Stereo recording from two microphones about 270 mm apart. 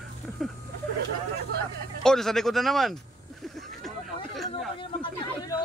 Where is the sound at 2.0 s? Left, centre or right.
Centre.